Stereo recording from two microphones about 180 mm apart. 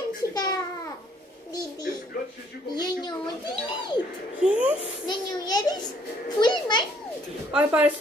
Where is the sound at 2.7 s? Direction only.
25° left (ahead or behind).